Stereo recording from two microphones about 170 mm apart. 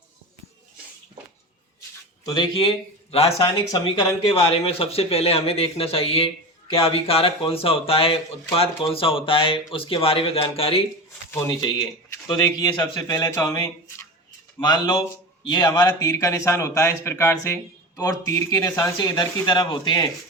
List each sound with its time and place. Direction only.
2.2 s speech: 30° left (ahead or behind)
3.7 s a man's voice: 20° left (ahead or behind)
12.3 s a man's voice: 25° left (ahead or behind)